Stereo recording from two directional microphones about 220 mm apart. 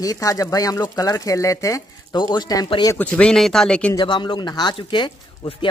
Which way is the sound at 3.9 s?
20° left (ahead or behind).